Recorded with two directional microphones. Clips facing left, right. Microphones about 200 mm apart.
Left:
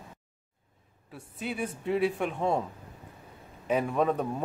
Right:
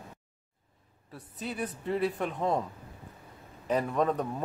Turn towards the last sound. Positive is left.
turn(degrees=5)  # may be behind; listen again after turning